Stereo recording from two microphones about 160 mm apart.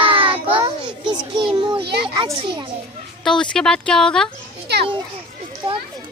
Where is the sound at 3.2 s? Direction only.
5° left (ahead or behind).